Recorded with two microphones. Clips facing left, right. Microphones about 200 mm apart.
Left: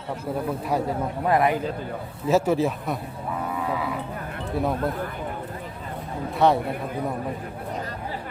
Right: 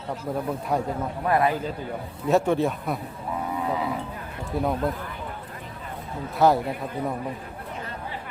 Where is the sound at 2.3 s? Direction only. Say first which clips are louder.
Even; 5° left (ahead or behind).